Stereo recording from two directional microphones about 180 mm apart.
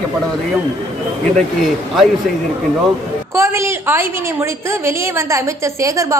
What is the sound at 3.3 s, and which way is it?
A woman's voice, 15° right (ahead or behind).